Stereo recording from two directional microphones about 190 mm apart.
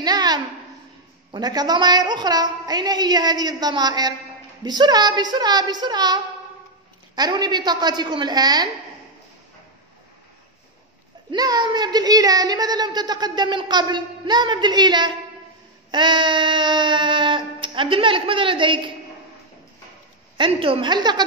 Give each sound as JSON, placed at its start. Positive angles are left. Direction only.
{"t": 0.0, "sound": "a sound", "side_deg": -20}
{"t": 1.3, "sound": "speech", "side_deg": -20}
{"t": 11.2, "sound": "speech", "side_deg": -20}
{"t": 20.3, "sound": "speech", "side_deg": -25}